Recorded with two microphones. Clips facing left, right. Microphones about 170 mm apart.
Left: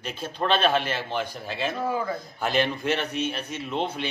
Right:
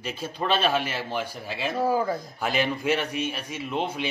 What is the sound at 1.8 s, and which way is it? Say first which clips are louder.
Speech: right 6 dB; 35° right (ahead or behind).